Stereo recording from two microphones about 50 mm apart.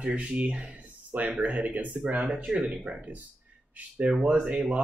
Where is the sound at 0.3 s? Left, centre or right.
Right.